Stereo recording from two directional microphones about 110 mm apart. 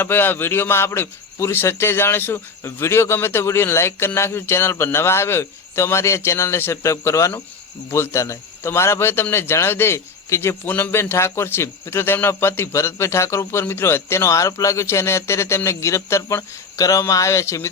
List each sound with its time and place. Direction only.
0.0 s speech: 20° left (ahead or behind)